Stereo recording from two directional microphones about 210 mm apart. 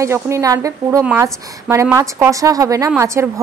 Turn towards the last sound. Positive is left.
turn(degrees=-15)  # may be behind; listen again after turning